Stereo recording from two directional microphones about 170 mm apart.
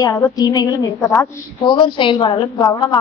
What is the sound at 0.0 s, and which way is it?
A woman's voice, 20° left (ahead or behind).